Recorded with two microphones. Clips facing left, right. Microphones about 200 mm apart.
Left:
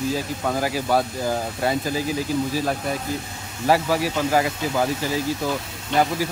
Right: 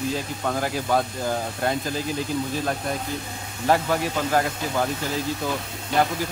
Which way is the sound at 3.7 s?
5° left (ahead or behind).